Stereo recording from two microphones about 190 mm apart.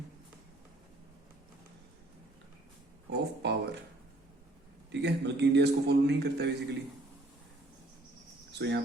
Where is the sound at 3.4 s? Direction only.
60° right (ahead or behind).